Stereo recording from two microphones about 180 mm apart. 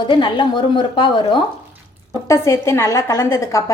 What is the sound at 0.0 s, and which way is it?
A woman's voice, 25° left (ahead or behind).